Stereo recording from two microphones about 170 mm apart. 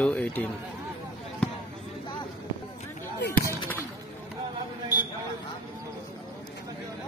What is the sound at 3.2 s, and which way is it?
Basketball bounce, 75° left (ahead or behind).